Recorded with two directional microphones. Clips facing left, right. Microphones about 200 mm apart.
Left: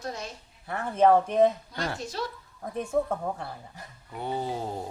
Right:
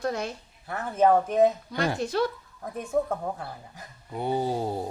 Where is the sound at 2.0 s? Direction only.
55° right (ahead or behind).